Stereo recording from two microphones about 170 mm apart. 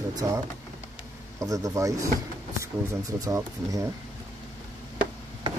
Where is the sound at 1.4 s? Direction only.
20° right (ahead or behind).